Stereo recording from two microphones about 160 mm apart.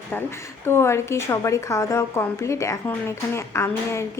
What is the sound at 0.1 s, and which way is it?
A woman's voice, 15° left (ahead or behind).